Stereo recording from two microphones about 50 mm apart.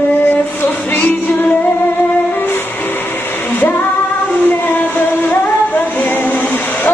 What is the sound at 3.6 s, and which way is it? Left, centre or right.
Female singing, left.